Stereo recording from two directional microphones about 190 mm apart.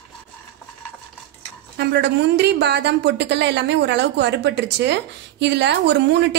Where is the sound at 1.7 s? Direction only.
65° right (ahead or behind).